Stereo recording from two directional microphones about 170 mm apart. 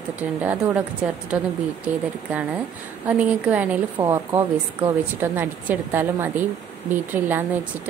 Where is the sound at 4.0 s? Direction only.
20° right (ahead or behind).